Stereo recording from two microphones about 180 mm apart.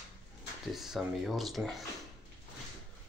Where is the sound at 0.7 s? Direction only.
Centre (ahead or behind).